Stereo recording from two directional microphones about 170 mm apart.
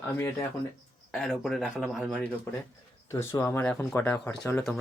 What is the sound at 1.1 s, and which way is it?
Speech, centre (ahead or behind).